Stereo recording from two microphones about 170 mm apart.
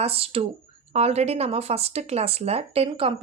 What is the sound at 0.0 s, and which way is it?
Speech, 35° right (ahead or behind).